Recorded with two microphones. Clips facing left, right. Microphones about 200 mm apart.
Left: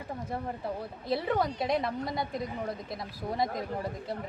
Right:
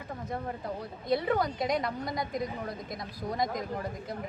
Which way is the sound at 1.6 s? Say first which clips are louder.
Left 1 dB; 30° left (ahead or behind).